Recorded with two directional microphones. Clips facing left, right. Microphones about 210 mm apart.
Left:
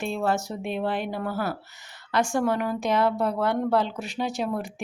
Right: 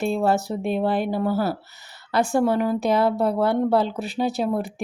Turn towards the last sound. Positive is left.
turn(degrees=-35)  # may be behind; listen again after turning